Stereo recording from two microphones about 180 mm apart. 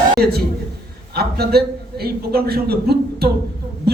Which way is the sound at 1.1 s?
60° right (ahead or behind).